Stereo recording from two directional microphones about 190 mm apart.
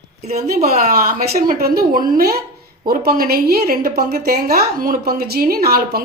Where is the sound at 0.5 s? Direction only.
35° right (ahead or behind).